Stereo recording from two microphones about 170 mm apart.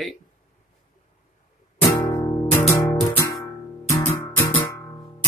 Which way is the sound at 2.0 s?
25° left (ahead or behind).